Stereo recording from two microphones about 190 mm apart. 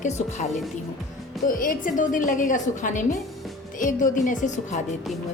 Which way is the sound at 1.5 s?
45° left (ahead or behind).